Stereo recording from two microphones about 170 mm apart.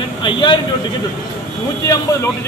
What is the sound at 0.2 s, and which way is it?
Speech, 30° left (ahead or behind).